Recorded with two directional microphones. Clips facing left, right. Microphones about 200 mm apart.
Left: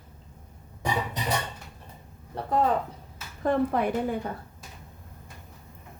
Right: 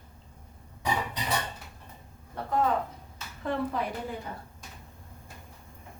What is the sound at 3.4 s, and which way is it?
Speech, 55° left (ahead or behind).